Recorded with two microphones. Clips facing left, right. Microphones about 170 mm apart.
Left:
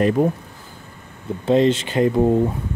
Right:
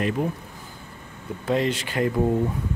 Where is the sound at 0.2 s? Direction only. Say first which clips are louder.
Left 8 dB; 45° left (ahead or behind).